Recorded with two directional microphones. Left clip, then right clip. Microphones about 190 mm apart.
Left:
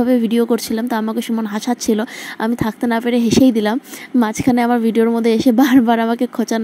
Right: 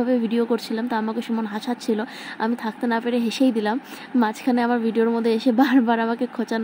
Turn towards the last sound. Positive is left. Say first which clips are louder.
# left 6 dB
turn(degrees=40)  # may be behind; listen again after turning